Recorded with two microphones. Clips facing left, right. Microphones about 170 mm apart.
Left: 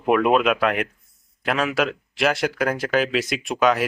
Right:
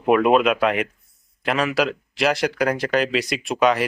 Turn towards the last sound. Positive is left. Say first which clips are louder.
# right 1 dB
turn(degrees=0)  # may be behind; listen again after turning